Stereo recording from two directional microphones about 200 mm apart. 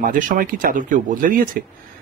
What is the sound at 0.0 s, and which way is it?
Speech, 45° right (ahead or behind).